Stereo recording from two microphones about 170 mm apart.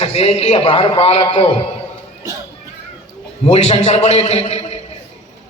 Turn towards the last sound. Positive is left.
turn(degrees=40)  # may be behind; listen again after turning